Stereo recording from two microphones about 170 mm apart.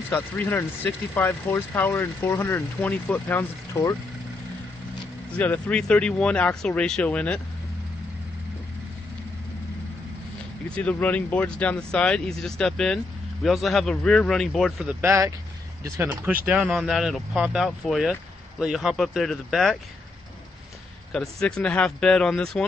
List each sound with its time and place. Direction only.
0.1 s speech: 10° left (ahead or behind)
5.4 s speech: 10° left (ahead or behind)
10.7 s speech: 10° left (ahead or behind)
15.0 s speech: 15° right (ahead or behind); by 19.8 s centre (ahead or behind)
21.1 s speech: 5° left (ahead or behind)